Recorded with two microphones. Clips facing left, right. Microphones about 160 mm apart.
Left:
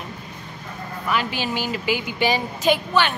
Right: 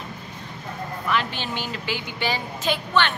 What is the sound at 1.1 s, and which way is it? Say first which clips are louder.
A woman's voice: left 2 dB; 5° left (ahead or behind).